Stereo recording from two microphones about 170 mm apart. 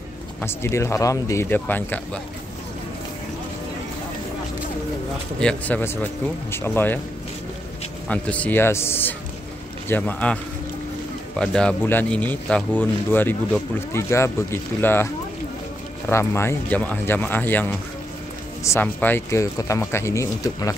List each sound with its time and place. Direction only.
0.4 s speech: 15° left (ahead or behind)
5.4 s speech: 5° left (ahead or behind)
8.1 s speech: 10° left (ahead or behind)
16.1 s speech: 15° left (ahead or behind)